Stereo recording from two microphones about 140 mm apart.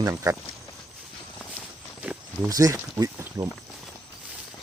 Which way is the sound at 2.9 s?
25° right (ahead or behind).